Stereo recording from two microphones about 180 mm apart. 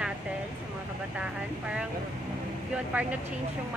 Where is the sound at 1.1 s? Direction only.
5° right (ahead or behind).